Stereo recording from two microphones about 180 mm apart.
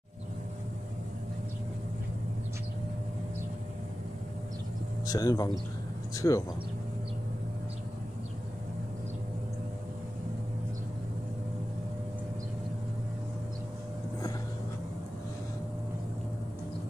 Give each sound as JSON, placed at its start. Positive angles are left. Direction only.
{"t": 5.0, "sound": "speech", "side_deg": 20}